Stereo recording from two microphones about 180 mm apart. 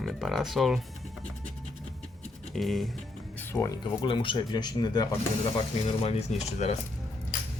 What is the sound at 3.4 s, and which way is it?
Speech, 15° left (ahead or behind).